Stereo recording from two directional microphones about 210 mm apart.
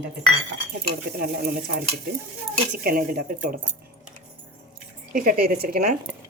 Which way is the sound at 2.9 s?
45° right (ahead or behind).